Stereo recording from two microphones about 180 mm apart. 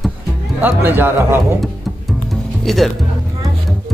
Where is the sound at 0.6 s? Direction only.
10° right (ahead or behind).